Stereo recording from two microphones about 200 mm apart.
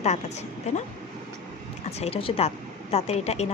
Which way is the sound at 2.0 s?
30° left (ahead or behind).